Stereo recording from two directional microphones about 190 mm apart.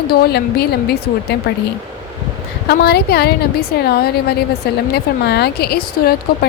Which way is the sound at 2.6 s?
55° left (ahead or behind).